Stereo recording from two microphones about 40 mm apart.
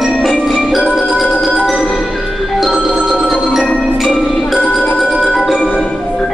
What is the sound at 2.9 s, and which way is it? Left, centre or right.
Marimba, centre.